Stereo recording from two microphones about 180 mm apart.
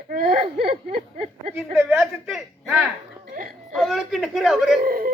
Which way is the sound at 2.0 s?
Centre (ahead or behind).